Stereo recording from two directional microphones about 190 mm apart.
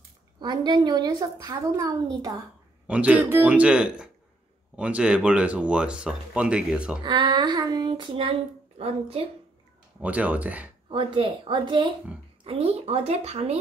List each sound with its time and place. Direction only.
0.4 s child singing: 25° right (ahead or behind)
2.9 s a man's voice: 5° right (ahead or behind)
7.0 s child singing: 20° right (ahead or behind)
10.0 s a man's voice: 5° right (ahead or behind)
10.9 s child singing: 25° right (ahead or behind)
12.4 s speech: 30° right (ahead or behind)